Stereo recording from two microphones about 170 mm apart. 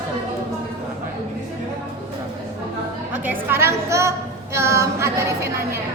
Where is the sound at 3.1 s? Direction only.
10° right (ahead or behind).